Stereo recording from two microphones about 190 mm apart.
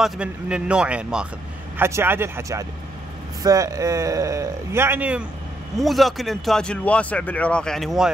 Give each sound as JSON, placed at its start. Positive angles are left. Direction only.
{"t": 0.0, "sound": "speech", "side_deg": -5}